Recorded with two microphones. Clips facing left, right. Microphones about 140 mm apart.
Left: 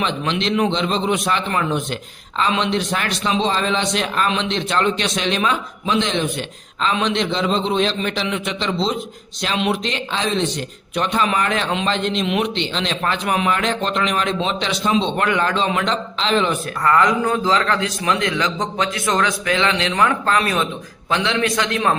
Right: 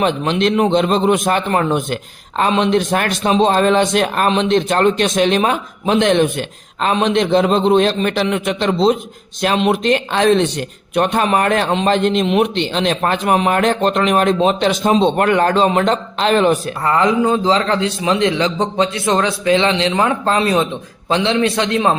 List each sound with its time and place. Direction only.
0.0 s speech: 50° right (ahead or behind)
16.8 s a man's voice: 25° right (ahead or behind)